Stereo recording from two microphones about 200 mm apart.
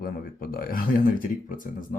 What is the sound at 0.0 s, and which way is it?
Speech, 45° left (ahead or behind).